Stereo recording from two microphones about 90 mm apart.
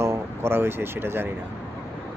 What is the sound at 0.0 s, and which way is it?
Speech, 30° right (ahead or behind).